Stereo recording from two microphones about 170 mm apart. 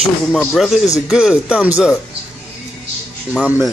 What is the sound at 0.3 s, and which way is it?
Speech, 5° left (ahead or behind).